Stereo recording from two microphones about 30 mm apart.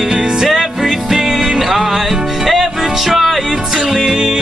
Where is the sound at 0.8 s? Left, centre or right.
Centre.